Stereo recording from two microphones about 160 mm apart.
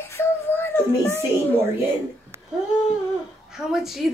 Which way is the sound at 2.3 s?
15° right (ahead or behind).